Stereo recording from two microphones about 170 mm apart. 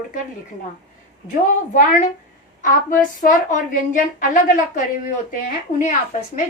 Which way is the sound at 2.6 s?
50° left (ahead or behind).